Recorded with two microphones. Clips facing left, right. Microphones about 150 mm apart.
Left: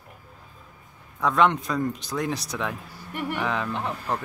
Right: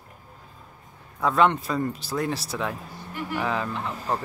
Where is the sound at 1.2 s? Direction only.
Centre (ahead or behind).